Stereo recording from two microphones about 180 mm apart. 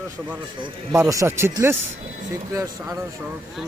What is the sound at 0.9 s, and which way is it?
Speech, 15° right (ahead or behind).